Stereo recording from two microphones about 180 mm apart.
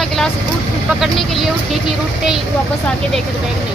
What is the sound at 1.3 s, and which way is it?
Speech, centre (ahead or behind).